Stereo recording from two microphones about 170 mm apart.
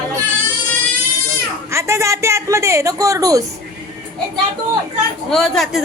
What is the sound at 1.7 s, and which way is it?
Speech, 15° right (ahead or behind).